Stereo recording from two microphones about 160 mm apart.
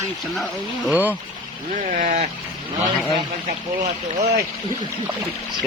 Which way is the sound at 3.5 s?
45° right (ahead or behind).